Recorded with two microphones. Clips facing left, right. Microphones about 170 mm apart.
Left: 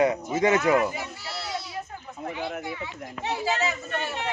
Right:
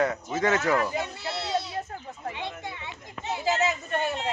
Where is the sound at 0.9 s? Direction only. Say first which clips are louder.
Right 4 dB; 25° right (ahead or behind).